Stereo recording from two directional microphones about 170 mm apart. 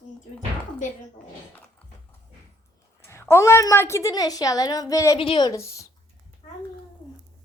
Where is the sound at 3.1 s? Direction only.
15° left (ahead or behind).